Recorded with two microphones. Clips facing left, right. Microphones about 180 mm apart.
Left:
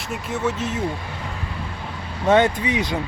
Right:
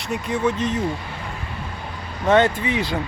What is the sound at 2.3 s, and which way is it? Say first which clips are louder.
Speech: even; 15° left (ahead or behind).